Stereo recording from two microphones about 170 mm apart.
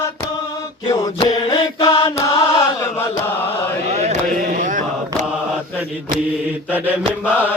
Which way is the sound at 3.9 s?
40° right (ahead or behind).